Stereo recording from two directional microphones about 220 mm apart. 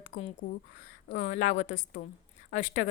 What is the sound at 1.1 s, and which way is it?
A woman's voice, 35° left (ahead or behind).